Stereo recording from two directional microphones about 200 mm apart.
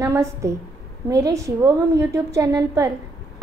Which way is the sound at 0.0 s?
15° right (ahead or behind).